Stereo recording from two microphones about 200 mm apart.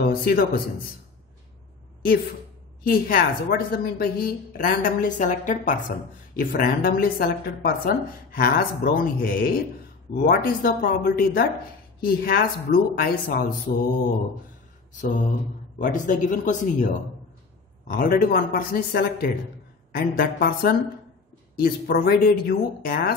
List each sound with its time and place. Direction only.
0.0 s a man's voice: 50° left (ahead or behind)
2.9 s speech: 45° left (ahead or behind)
14.9 s mantra: 40° left (ahead or behind)
15.8 s speech: 40° left (ahead or behind)